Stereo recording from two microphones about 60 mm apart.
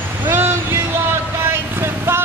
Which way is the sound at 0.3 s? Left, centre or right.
Right.